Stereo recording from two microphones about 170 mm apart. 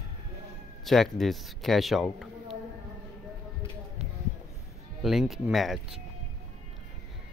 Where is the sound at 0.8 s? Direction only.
Centre (ahead or behind).